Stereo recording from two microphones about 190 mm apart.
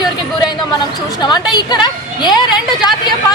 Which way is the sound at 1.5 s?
20° left (ahead or behind).